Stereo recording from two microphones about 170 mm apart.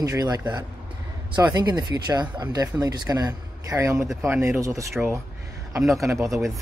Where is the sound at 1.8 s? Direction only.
25° right (ahead or behind).